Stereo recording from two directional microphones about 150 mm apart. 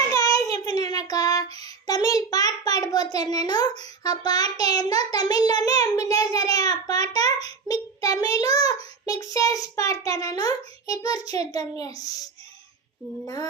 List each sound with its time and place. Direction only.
0.1 s child singing: 25° left (ahead or behind)
1.5 s a child's voice: 25° left (ahead or behind)
7.4 s child singing: 25° left (ahead or behind)
9.0 s a child's voice: 20° left (ahead or behind)